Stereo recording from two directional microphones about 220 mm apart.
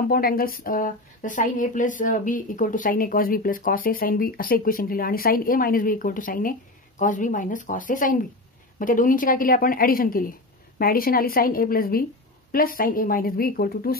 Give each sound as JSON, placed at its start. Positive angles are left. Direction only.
{"t": 0.1, "sound": "a woman's voice", "side_deg": 40}